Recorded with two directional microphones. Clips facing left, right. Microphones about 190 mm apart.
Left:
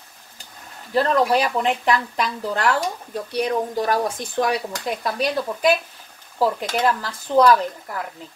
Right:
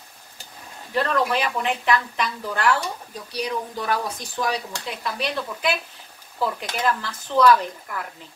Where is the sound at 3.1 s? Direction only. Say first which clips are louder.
Left 7 dB; 55° left (ahead or behind).